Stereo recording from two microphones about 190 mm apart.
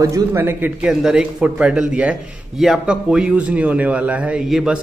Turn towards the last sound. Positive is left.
turn(degrees=0)  # may be behind; listen again after turning